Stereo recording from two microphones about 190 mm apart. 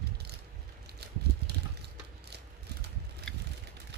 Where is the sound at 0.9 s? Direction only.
60° right (ahead or behind).